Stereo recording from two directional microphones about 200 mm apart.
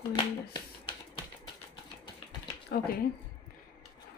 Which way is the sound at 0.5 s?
25° left (ahead or behind).